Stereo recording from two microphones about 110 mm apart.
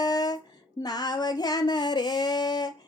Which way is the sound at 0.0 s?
35° left (ahead or behind).